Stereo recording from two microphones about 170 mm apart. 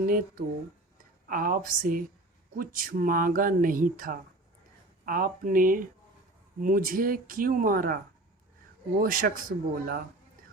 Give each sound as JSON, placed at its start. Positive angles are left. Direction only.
{"t": 0.0, "sound": "speech", "side_deg": -55}
{"t": 9.0, "sound": "speech", "side_deg": -55}